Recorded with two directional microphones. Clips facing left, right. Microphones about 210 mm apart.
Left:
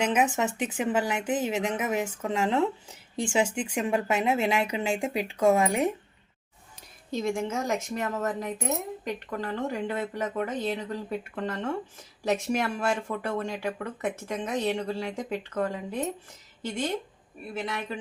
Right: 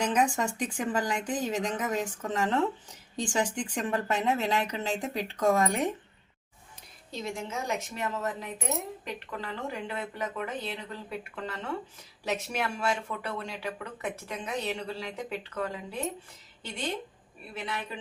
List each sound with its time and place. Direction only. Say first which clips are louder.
0.0 s a woman's voice: left 2 dB; 5° left (ahead or behind)
7.1 s speech: left 7 dB; 50° left (ahead or behind)
17.5 s speech: left 4 dB; 45° left (ahead or behind)